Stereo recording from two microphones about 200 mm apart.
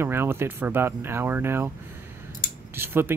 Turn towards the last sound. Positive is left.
turn(degrees=-10)  # may be behind; listen again after turning